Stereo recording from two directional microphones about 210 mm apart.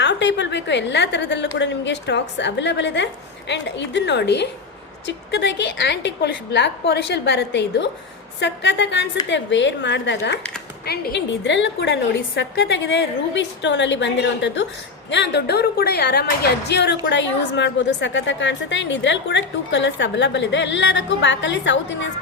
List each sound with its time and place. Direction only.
0.0 s a woman's voice: 55° left (ahead or behind)